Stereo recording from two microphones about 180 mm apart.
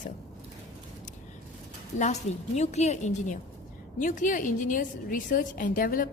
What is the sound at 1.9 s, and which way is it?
A woman's voice, 40° left (ahead or behind).